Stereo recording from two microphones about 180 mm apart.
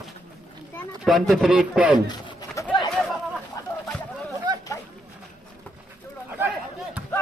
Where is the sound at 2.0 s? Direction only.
20° left (ahead or behind).